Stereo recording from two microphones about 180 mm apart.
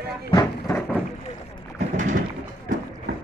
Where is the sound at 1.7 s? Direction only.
45° right (ahead or behind).